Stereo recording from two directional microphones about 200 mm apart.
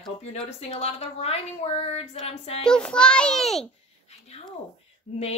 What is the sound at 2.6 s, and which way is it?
A child's voice, 5° left (ahead or behind).